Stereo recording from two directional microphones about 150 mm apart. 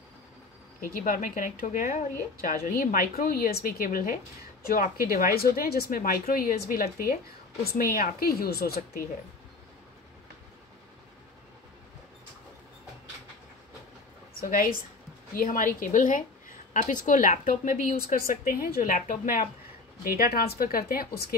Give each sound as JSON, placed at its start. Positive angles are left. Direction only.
{"t": 0.7, "sound": "a woman's voice", "side_deg": 70}
{"t": 14.3, "sound": "a woman's voice", "side_deg": 70}